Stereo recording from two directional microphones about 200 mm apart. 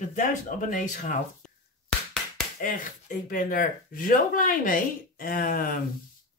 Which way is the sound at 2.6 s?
40° left (ahead or behind).